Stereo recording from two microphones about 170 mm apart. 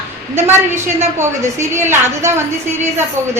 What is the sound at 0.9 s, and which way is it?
A woman's voice, 15° right (ahead or behind).